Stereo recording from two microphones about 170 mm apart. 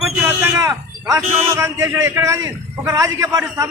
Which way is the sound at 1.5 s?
15° right (ahead or behind).